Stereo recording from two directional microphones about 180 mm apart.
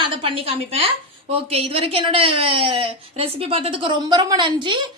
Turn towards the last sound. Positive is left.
turn(degrees=-25)  # may be behind; listen again after turning